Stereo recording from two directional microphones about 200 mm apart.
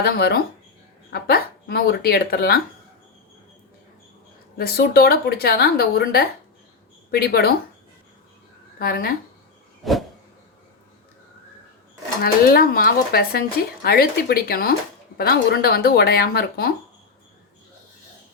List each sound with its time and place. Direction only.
0.0 s speech: 55° left (ahead or behind)
4.5 s speech: 50° left (ahead or behind)
8.8 s speech: 50° left (ahead or behind)
9.8 s a sound: centre (ahead or behind)
12.2 s speech: 50° left (ahead or behind)